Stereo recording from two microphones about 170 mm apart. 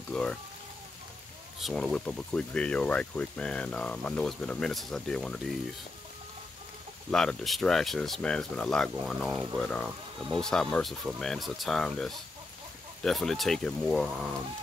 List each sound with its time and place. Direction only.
0.1 s speech: 5° left (ahead or behind)
1.6 s speech: centre (ahead or behind)
7.1 s speech: 5° left (ahead or behind)